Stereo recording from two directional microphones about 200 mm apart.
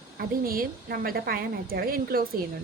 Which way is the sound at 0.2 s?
45° right (ahead or behind).